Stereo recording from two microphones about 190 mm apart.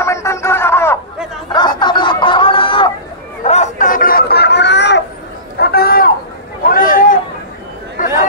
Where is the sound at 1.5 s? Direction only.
25° left (ahead or behind).